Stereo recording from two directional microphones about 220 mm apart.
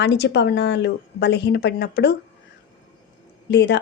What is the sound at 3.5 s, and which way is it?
Speech, 50° left (ahead or behind).